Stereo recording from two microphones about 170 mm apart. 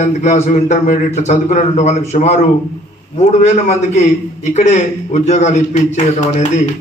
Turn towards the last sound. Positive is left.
turn(degrees=45)  # may be behind; listen again after turning